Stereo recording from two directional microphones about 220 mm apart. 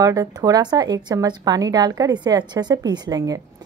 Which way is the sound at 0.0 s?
15° right (ahead or behind).